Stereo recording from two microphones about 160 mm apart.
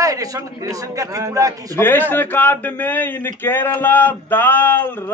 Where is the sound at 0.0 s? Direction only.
20° right (ahead or behind).